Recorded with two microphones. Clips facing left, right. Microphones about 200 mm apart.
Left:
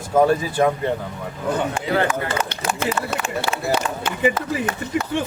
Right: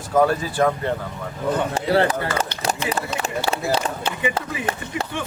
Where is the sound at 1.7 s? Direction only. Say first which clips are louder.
Right 2 dB; 35° right (ahead or behind).